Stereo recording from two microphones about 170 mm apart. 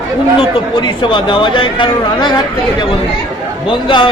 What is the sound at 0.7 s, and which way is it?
A man's voice, 25° left (ahead or behind).